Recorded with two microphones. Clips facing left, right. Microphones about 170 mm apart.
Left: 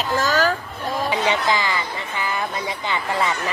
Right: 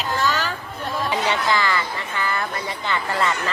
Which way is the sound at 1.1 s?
15° left (ahead or behind).